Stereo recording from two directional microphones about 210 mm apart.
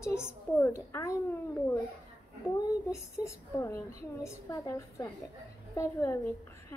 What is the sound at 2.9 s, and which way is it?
A woman's voice, 15° left (ahead or behind).